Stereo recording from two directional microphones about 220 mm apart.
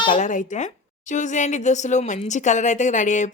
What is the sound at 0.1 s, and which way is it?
A woman's voice, 35° left (ahead or behind).